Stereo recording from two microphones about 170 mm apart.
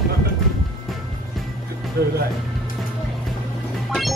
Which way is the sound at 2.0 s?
65° right (ahead or behind).